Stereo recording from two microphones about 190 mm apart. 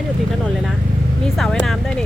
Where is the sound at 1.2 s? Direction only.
Centre (ahead or behind).